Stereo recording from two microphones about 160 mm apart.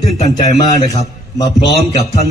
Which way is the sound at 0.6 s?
20° left (ahead or behind).